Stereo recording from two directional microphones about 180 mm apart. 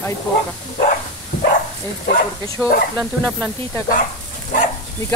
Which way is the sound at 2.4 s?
20° left (ahead or behind).